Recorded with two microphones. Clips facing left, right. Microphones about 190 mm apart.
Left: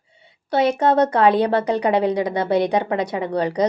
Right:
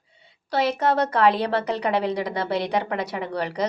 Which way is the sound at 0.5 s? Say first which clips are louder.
Left 5 dB; 30° left (ahead or behind).